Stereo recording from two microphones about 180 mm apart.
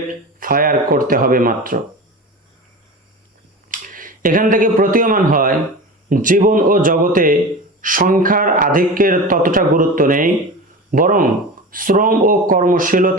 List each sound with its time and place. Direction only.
0.3 s speech: 50° right (ahead or behind)
3.7 s speech: 50° right (ahead or behind)